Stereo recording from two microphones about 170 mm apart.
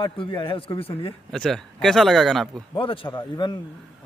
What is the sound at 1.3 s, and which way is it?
Speech, centre (ahead or behind).